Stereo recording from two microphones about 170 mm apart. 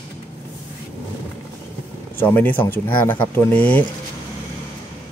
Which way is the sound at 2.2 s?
10° left (ahead or behind).